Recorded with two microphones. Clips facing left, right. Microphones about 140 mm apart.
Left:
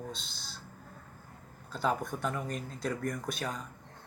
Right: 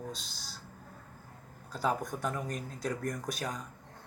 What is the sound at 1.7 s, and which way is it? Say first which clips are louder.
Speech: left 1 dB; 10° right (ahead or behind).